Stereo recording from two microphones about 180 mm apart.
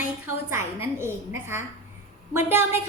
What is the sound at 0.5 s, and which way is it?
Speech, 15° right (ahead or behind).